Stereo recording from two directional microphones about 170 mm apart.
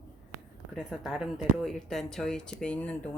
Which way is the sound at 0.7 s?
Centre (ahead or behind).